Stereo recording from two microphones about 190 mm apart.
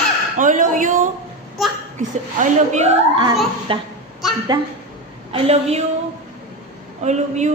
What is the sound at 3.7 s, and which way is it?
Speech, 30° right (ahead or behind).